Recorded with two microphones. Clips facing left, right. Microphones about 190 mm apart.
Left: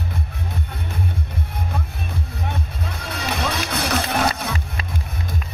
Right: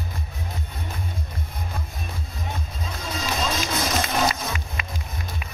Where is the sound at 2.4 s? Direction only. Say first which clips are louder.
Left 2 dB; 65° left (ahead or behind).